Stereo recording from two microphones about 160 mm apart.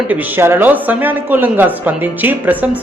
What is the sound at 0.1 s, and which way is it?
Speech, 10° right (ahead or behind).